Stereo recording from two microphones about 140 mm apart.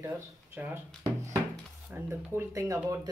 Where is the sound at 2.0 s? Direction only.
20° right (ahead or behind).